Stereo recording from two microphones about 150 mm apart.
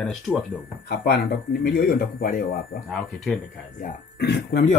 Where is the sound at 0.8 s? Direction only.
90° left; by 2.8 s 65° left (ahead or behind).